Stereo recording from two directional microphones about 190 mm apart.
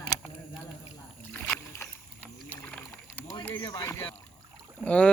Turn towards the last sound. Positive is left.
turn(degrees=5)  # may be behind; listen again after turning